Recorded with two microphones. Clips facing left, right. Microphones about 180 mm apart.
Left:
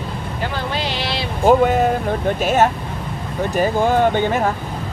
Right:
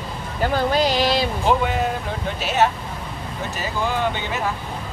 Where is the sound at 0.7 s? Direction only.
40° right (ahead or behind).